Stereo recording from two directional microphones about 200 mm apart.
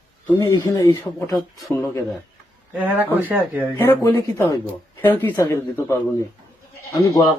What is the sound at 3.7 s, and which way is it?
A man's voice, 15° left (ahead or behind).